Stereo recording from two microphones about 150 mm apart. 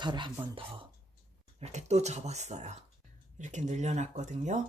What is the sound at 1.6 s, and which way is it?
Speech, 50° right (ahead or behind).